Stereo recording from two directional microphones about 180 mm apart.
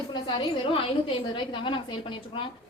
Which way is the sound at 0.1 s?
25° left (ahead or behind).